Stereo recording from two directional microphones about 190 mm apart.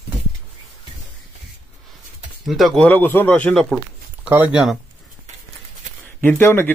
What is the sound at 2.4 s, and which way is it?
Speech, centre (ahead or behind).